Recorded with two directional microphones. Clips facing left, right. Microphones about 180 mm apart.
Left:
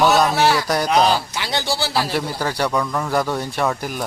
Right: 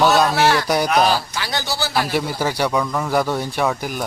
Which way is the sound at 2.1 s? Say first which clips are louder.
Right 1 dB; 10° right (ahead or behind).